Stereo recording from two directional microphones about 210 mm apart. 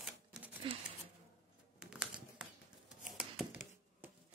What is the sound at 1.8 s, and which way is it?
Typing, 5° right (ahead or behind).